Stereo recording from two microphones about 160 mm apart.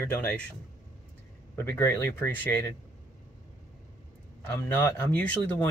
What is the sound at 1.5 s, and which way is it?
Speech, 15° left (ahead or behind).